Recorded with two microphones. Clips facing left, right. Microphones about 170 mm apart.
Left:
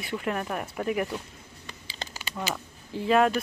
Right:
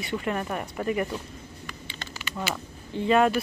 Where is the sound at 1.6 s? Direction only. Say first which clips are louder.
Left 3 dB; 35° left (ahead or behind).